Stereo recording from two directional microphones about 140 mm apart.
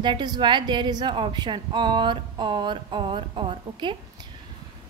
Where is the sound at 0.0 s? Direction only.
30° right (ahead or behind).